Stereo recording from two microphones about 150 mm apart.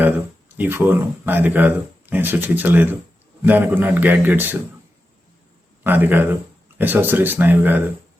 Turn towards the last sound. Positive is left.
turn(degrees=-10)  # may be behind; listen again after turning